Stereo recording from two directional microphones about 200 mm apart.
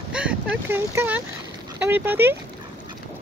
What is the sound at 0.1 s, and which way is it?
Speech, 5° right (ahead or behind).